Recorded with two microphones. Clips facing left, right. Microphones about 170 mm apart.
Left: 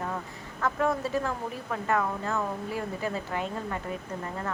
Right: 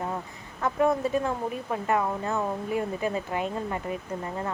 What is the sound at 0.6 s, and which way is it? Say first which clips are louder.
Speech: right 3 dB; 20° right (ahead or behind).